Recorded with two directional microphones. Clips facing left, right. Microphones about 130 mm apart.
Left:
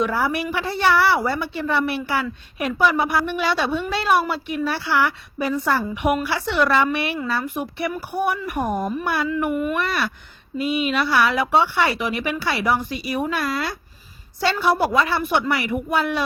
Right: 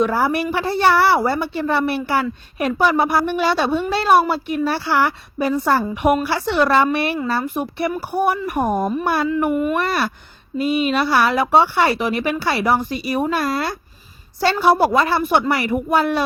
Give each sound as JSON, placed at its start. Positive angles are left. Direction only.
{"t": 0.0, "sound": "a woman's voice", "side_deg": -40}
{"t": 9.7, "sound": "a woman's voice", "side_deg": -40}